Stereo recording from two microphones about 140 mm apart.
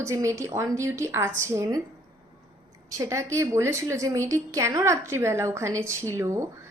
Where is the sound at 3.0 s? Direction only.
20° right (ahead or behind).